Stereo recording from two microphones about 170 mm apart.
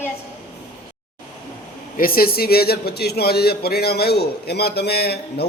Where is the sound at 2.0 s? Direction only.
60° left (ahead or behind).